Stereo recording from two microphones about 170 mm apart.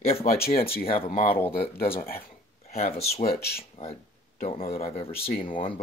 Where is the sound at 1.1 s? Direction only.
55° left (ahead or behind).